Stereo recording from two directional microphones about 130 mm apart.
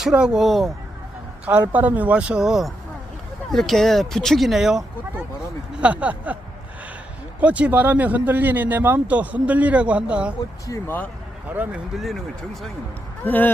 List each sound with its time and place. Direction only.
0.0 s speech: 5° right (ahead or behind)
1.7 s speech: 10° right (ahead or behind)
7.3 s speech: 10° right (ahead or behind)
10.7 s speech: 15° left (ahead or behind)
11.4 s speech: 10° right (ahead or behind)
13.2 s speech: 15° left (ahead or behind)